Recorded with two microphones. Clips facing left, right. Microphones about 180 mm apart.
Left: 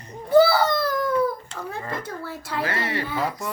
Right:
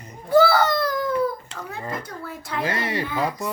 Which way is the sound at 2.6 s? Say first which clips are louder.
Right 2 dB; 15° right (ahead or behind).